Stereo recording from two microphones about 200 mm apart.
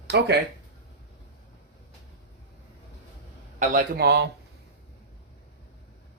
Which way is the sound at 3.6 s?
50° right (ahead or behind).